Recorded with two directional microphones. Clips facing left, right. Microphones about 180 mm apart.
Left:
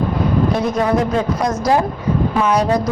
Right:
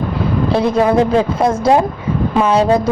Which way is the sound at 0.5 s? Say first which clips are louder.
Right 4 dB; 30° right (ahead or behind).